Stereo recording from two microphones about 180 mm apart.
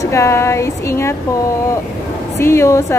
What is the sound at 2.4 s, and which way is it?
Speech, 15° left (ahead or behind).